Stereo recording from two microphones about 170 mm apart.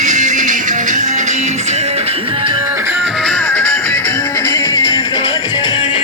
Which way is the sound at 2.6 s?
15° right (ahead or behind).